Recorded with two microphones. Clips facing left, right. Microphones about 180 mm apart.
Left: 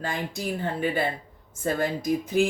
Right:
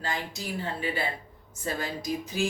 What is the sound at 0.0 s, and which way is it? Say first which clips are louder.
Speech: left 4 dB; 55° left (ahead or behind).